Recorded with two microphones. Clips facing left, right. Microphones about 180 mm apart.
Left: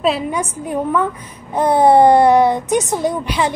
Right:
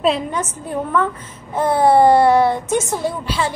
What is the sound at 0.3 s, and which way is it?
Child singing, 10° left (ahead or behind).